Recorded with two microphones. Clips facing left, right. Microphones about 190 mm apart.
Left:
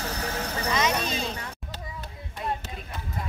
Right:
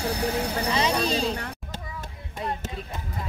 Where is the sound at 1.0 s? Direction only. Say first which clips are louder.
Right 5 dB; 35° right (ahead or behind).